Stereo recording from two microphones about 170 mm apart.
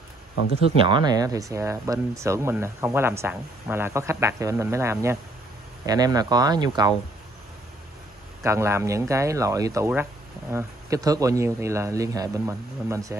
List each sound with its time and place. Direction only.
0.8 s speech: 25° right (ahead or behind)
8.4 s speech: 15° right (ahead or behind)